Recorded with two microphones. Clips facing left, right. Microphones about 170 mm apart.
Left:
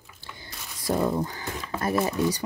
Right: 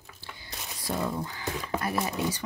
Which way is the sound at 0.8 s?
45° left (ahead or behind).